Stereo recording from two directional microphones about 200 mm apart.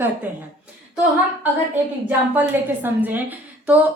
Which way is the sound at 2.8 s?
10° right (ahead or behind).